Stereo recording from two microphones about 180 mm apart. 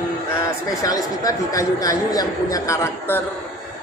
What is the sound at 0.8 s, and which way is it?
A man's voice, 20° left (ahead or behind).